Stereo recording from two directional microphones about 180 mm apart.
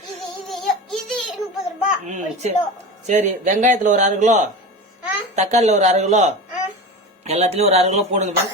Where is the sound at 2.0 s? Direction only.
45° right (ahead or behind).